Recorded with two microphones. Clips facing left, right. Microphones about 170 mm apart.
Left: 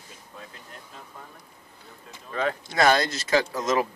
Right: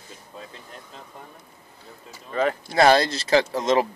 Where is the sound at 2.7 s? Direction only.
30° right (ahead or behind).